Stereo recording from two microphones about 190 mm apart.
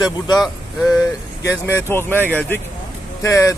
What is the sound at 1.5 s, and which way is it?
Speech, 15° left (ahead or behind).